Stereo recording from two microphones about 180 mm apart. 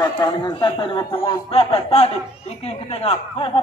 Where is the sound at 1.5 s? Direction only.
35° left (ahead or behind).